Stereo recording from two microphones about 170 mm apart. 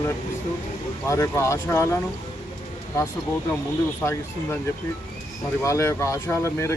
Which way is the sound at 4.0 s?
15° left (ahead or behind).